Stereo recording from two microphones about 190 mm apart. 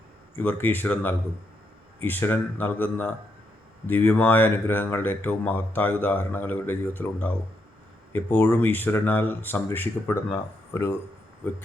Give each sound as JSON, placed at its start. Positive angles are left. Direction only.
{"t": 0.3, "sound": "speech", "side_deg": 10}